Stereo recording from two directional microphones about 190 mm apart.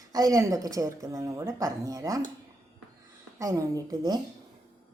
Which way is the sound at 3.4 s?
15° right (ahead or behind).